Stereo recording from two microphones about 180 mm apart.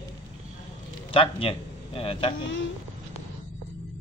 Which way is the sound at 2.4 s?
90° left.